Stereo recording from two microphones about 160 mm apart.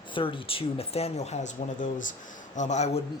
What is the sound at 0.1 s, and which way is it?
A man's voice, 30° left (ahead or behind).